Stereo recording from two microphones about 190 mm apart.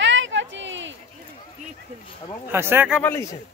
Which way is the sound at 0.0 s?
80° right.